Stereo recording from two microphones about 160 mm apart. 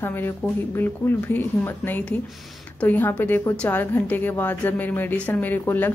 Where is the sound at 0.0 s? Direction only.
15° left (ahead or behind).